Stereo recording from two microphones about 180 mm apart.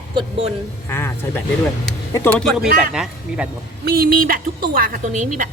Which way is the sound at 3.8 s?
55° right (ahead or behind).